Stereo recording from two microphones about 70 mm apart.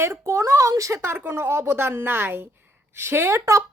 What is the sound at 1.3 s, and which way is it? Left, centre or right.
Speech, right.